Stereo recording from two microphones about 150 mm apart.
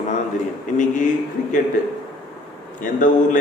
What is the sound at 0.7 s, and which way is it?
Speech, 60° left (ahead or behind).